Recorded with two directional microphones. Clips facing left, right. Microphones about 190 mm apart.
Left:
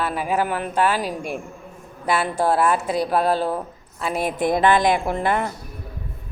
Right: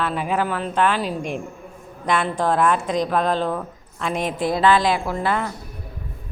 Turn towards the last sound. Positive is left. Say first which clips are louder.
# left 2 dB
turn(degrees=20)  # may be behind; listen again after turning